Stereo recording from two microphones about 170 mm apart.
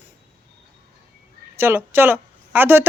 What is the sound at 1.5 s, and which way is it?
A woman's voice, 15° right (ahead or behind).